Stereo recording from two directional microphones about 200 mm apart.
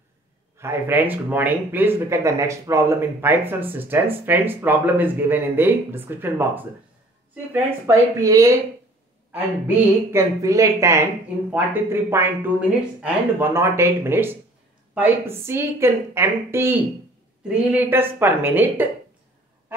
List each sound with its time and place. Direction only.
0.6 s speech: 10° right (ahead or behind)